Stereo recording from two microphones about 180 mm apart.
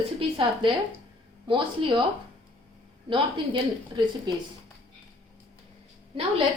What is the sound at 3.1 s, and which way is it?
Speech, 25° right (ahead or behind).